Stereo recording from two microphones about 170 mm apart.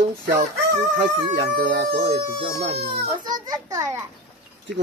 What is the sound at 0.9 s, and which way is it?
Speech, 75° right (ahead or behind).